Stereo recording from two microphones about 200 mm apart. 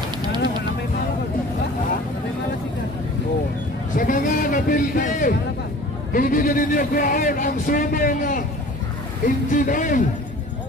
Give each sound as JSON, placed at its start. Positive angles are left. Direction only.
{"t": 3.9, "sound": "a sound", "side_deg": 40}
{"t": 6.1, "sound": "speech", "side_deg": 45}
{"t": 9.5, "sound": "speech", "side_deg": 40}